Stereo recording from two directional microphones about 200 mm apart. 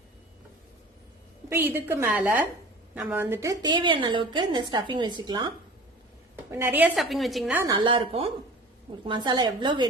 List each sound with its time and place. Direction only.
1.5 s a woman's voice: 10° right (ahead or behind)
7.6 s a woman's voice: 20° right (ahead or behind)